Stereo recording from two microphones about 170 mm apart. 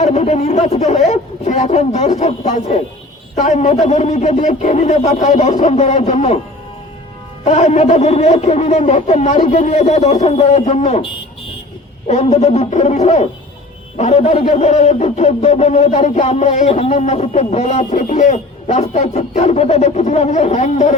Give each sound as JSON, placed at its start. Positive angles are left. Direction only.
{"t": 0.0, "sound": "speech", "side_deg": 40}
{"t": 7.4, "sound": "speech", "side_deg": 40}